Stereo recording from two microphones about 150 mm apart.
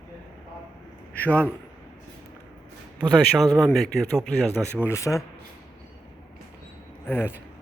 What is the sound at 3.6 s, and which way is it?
Speech, centre (ahead or behind).